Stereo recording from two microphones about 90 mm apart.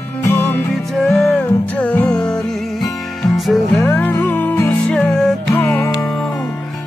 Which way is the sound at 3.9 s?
20° left (ahead or behind).